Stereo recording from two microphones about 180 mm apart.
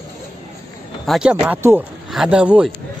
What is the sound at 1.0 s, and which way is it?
Speech, 5° right (ahead or behind).